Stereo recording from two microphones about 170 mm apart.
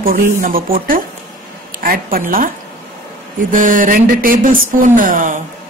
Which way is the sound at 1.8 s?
55° right (ahead or behind).